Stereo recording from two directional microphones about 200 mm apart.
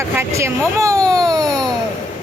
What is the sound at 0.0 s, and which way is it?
Speech, 15° right (ahead or behind).